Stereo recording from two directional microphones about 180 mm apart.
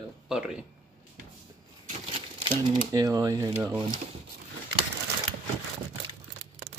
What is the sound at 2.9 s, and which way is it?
Speech, 20° right (ahead or behind).